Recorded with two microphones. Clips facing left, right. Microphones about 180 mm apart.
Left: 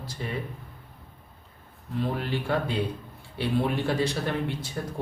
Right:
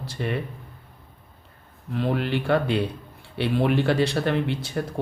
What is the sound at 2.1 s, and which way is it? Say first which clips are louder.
A man's voice: right 5 dB; 75° right (ahead or behind).